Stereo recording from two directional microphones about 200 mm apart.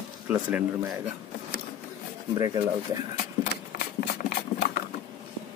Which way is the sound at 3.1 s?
45° left (ahead or behind).